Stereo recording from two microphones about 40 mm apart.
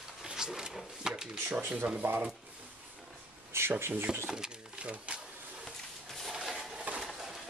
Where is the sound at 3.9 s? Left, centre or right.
Right.